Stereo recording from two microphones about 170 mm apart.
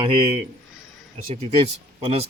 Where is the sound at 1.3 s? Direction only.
35° right (ahead or behind).